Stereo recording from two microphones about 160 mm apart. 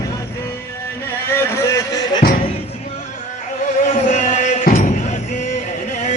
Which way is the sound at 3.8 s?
50° left (ahead or behind).